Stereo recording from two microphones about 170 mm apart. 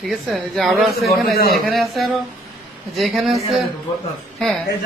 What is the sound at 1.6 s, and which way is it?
Speech, centre (ahead or behind).